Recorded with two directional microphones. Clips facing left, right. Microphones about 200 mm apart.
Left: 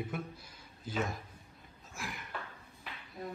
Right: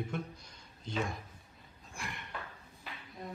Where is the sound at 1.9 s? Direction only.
Centre (ahead or behind).